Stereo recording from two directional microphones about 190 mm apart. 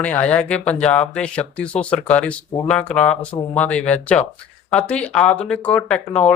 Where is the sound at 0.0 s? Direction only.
5° left (ahead or behind).